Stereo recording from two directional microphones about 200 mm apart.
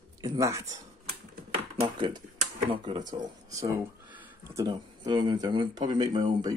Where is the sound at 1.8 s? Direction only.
20° right (ahead or behind).